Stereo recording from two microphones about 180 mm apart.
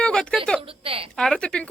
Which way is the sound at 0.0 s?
5° left (ahead or behind).